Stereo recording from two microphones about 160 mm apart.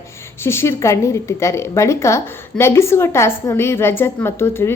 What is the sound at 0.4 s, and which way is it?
A woman's voice, 15° left (ahead or behind).